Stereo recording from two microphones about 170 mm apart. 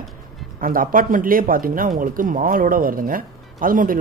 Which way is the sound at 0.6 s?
55° right (ahead or behind).